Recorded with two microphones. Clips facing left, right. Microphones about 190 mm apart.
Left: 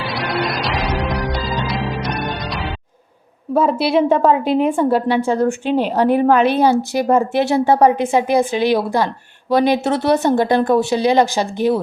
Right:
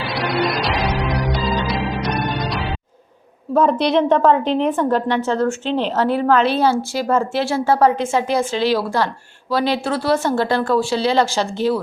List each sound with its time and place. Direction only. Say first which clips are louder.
0.0 s music: right 1 dB; centre (ahead or behind)
3.5 s a woman's voice: even; 5° left (ahead or behind)